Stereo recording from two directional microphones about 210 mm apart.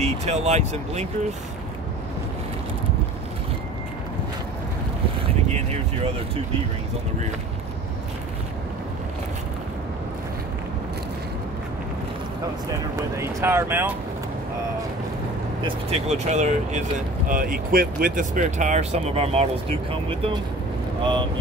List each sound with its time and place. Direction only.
0.0 s speech: 30° right (ahead or behind)
13.2 s speech: 10° right (ahead or behind)
15.6 s speech: 30° right (ahead or behind)